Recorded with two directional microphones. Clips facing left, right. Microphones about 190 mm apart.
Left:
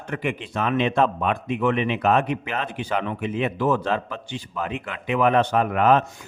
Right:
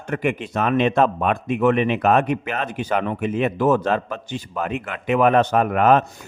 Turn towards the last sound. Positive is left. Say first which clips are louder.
# right 2 dB
turn(degrees=-50)  # may be behind; listen again after turning